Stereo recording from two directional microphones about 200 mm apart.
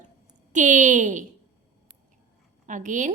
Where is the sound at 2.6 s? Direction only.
40° right (ahead or behind).